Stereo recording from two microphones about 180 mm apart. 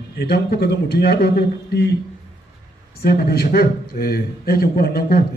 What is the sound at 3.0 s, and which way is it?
A man's voice, 60° left (ahead or behind).